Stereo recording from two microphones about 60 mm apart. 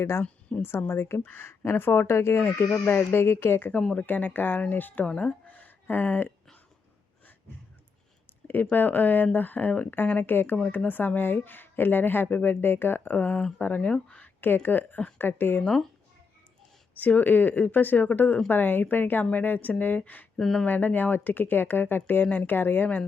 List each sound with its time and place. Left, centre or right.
0.0 s speech: left
0.5 s speech: left
0.9 s speech: left
2.4 s speech: left
3.8 s speech: centre
4.0 s speech: left
8.7 s speech: left
13.9 s speech: centre
14.4 s speech: left
15.3 s speech: left
17.0 s speech: left
20.4 s speech: centre
20.7 s speech: left